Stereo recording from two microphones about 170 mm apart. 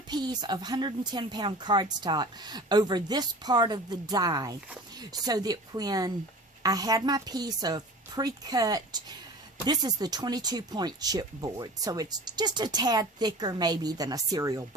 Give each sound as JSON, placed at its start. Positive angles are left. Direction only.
{"t": 0.1, "sound": "speech", "side_deg": -25}